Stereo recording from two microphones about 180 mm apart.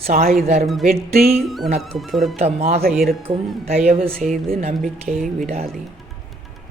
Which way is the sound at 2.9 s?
Centre (ahead or behind).